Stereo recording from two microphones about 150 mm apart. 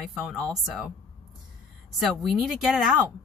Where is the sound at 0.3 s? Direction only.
Centre (ahead or behind).